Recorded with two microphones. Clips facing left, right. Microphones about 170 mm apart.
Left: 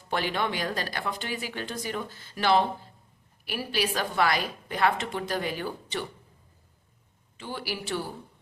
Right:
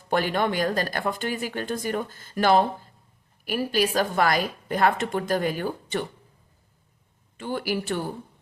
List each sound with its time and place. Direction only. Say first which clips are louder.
0.1 s a woman's voice: right 5 dB; 50° right (ahead or behind)
7.3 s a woman's voice: right 7 dB; 50° right (ahead or behind)